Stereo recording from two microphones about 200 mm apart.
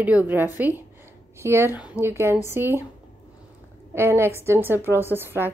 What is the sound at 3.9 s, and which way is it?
Speech, 10° right (ahead or behind).